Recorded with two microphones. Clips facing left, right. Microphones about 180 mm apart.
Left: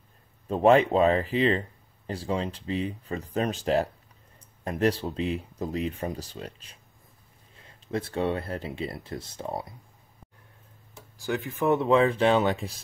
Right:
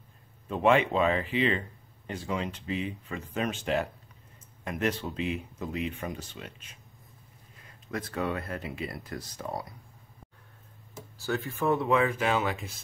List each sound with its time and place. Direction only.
0.5 s speech: 35° left (ahead or behind)
11.1 s speech: 15° left (ahead or behind); by 12.7 s 35° left (ahead or behind)